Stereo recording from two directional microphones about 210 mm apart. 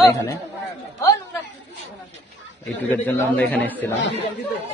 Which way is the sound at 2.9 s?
10° left (ahead or behind).